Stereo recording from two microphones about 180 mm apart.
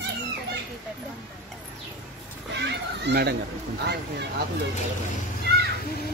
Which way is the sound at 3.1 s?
65° right (ahead or behind).